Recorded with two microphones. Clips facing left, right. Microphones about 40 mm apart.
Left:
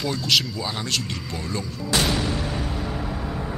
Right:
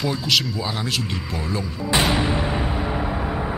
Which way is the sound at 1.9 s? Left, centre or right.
Right.